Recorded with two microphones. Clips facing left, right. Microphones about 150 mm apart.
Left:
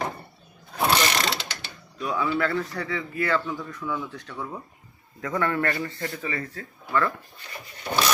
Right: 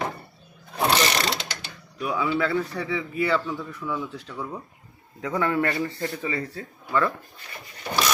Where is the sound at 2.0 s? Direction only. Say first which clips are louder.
Right 1 dB; 10° right (ahead or behind).